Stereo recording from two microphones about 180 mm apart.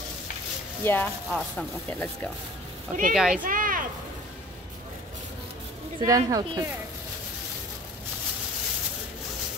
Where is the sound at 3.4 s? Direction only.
50° right (ahead or behind).